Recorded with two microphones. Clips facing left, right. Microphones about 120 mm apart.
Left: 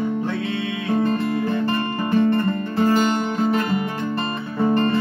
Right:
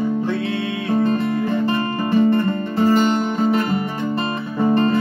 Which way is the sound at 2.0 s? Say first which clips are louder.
Right 2 dB; 5° right (ahead or behind).